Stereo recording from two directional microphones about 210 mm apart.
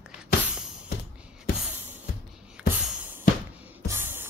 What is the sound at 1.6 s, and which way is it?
Music, 10° right (ahead or behind).